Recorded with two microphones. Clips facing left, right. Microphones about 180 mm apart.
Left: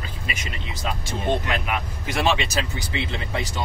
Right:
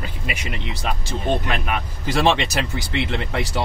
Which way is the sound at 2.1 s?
80° right.